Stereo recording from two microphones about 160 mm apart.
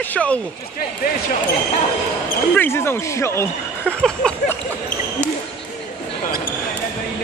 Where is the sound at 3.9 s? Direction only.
5° left (ahead or behind).